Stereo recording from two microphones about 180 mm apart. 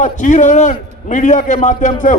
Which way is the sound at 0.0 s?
45° left (ahead or behind).